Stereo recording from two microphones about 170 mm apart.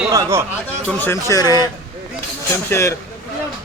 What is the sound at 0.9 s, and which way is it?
Speech, 15° left (ahead or behind).